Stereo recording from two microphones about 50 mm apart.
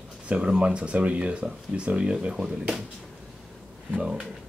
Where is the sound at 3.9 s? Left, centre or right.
Centre.